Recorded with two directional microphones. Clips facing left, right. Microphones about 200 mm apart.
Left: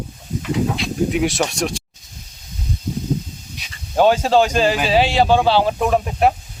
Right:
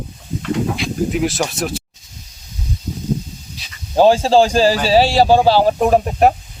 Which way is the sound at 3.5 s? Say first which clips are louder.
Right 3 dB; 30° right (ahead or behind).